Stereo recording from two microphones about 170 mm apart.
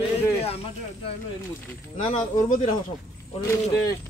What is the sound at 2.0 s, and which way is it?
Speech, 40° left (ahead or behind).